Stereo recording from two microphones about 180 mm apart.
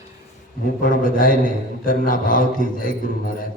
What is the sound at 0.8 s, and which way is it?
A man's voice, 50° left (ahead or behind).